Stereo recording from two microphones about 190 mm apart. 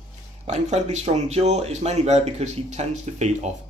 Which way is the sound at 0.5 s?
35° right (ahead or behind).